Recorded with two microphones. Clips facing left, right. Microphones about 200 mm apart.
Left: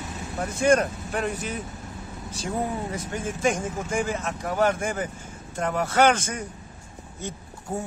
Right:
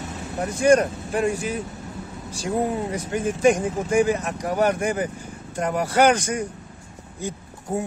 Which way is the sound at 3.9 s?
15° right (ahead or behind).